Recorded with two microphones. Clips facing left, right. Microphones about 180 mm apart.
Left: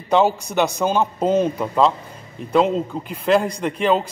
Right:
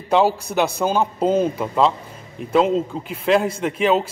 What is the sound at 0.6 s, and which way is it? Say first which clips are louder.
A man's voice: left 1 dB; 10° right (ahead or behind).